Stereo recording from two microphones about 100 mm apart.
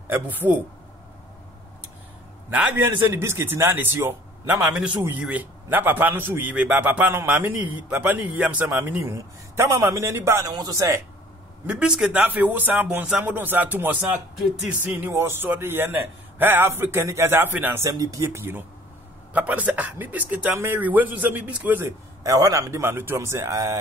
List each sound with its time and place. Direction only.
0.1 s a man's voice: 15° right (ahead or behind)
2.7 s a man's voice: 25° right (ahead or behind)
9.0 s a man's voice: 30° right (ahead or behind)
10.5 s a man's voice: 45° right (ahead or behind)
11.6 s a man's voice: 10° right (ahead or behind)
17.8 s a man's voice: 35° right (ahead or behind); by 21.9 s 20° right (ahead or behind)
22.2 s a man's voice: 35° right (ahead or behind)